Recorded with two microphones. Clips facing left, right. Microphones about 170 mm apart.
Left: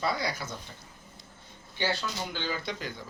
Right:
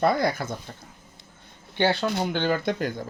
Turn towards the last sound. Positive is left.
turn(degrees=-50)  # may be behind; listen again after turning